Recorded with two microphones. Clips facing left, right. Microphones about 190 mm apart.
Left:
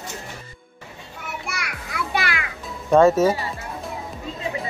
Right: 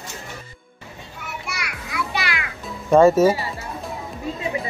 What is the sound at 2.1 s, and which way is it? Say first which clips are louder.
Music: left 4 dB; 50° left (ahead or behind).